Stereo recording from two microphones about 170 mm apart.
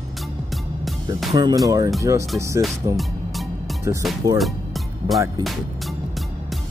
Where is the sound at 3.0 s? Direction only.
Centre (ahead or behind).